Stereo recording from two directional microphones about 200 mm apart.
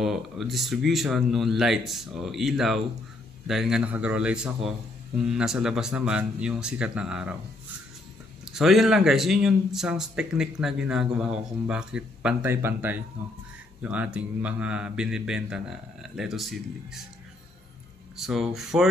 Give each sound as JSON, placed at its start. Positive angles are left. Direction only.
{"t": 0.0, "sound": "a man's voice", "side_deg": 0}
{"t": 8.5, "sound": "a man's voice", "side_deg": 0}
{"t": 18.1, "sound": "a man's voice", "side_deg": 0}